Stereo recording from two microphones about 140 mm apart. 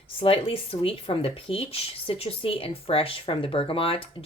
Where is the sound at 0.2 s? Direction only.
40° left (ahead or behind).